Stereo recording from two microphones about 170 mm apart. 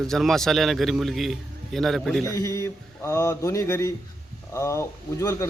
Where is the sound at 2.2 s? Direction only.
15° left (ahead or behind).